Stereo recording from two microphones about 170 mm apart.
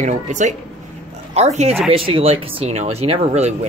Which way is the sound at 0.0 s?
45° right (ahead or behind).